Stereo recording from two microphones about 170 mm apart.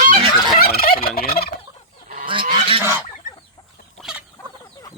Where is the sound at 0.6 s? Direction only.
60° left (ahead or behind).